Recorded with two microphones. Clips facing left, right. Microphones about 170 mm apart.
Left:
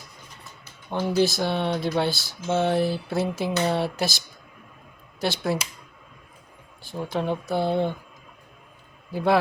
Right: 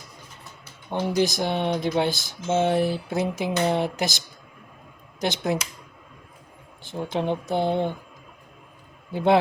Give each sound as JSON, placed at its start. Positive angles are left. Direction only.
{"t": 0.9, "sound": "speech", "side_deg": -15}
{"t": 5.2, "sound": "speech", "side_deg": -20}
{"t": 6.8, "sound": "speech", "side_deg": -20}
{"t": 9.1, "sound": "speech", "side_deg": -20}